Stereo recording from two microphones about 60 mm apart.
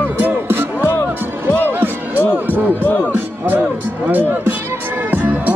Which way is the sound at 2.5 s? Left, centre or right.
Right.